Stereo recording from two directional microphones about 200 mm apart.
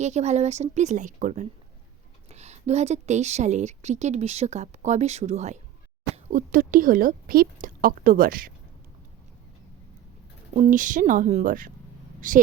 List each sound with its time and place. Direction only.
0.0 s a woman's voice: 35° right (ahead or behind)
10.5 s a woman's voice: 40° right (ahead or behind)